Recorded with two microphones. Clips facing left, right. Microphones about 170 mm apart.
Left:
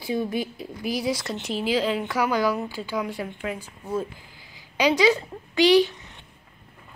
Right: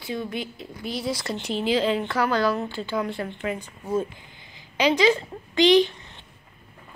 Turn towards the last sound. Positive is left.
turn(degrees=10)  # may be behind; listen again after turning